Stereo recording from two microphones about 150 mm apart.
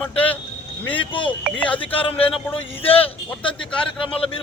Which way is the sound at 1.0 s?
35° left (ahead or behind).